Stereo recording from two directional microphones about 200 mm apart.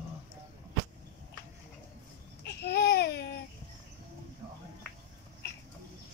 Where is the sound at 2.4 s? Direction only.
55° left (ahead or behind).